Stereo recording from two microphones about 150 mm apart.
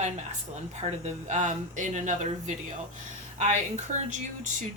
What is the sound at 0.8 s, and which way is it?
A woman's voice, 50° right (ahead or behind).